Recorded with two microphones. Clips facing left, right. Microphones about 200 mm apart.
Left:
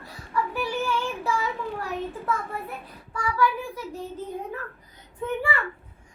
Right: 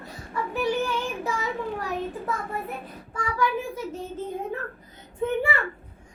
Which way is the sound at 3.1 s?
20° right (ahead or behind).